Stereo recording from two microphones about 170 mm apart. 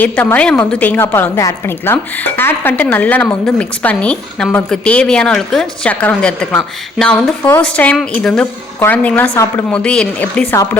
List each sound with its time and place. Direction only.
0.0 s a woman's voice: 10° left (ahead or behind)
9.6 s a woman's voice: 5° left (ahead or behind)